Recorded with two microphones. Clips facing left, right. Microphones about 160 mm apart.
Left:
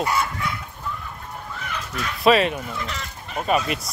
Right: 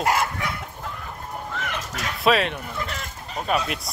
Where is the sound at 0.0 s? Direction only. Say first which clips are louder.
Right 1 dB; 75° right (ahead or behind).